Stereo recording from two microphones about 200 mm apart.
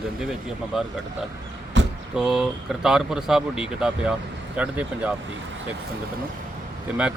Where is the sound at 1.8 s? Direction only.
65° right (ahead or behind).